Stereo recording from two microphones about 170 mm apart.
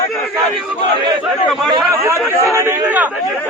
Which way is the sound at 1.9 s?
15° right (ahead or behind).